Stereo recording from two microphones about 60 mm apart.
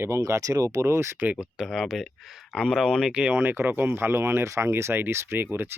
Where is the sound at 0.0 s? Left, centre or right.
Right.